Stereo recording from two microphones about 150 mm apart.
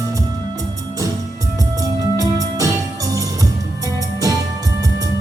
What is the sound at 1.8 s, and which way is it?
Music, 25° right (ahead or behind).